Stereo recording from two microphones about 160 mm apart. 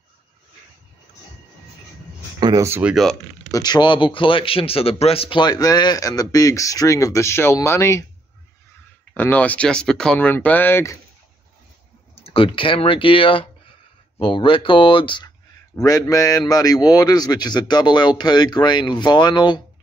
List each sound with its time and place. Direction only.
2.4 s speech: 20° right (ahead or behind)
2.9 s speech: centre (ahead or behind)
3.5 s speech: 25° left (ahead or behind)
9.1 s speech: 10° left (ahead or behind)
12.2 s speech: 35° left (ahead or behind)
15.7 s speech: 20° left (ahead or behind)